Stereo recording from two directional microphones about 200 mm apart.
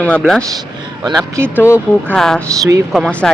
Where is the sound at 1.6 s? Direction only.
10° left (ahead or behind).